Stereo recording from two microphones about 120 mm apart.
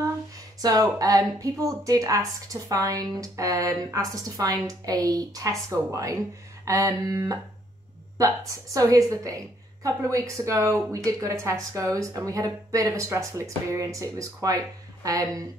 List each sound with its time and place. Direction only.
0.6 s speech: 30° right (ahead or behind)
8.7 s speech: 30° right (ahead or behind)